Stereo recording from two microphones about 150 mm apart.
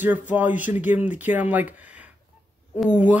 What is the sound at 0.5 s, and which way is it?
Speech, 60° left (ahead or behind).